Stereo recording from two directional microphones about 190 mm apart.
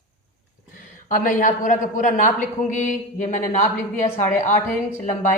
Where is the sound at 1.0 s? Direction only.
45° left (ahead or behind).